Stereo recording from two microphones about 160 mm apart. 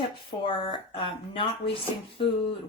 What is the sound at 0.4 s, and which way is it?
Speech, 30° left (ahead or behind).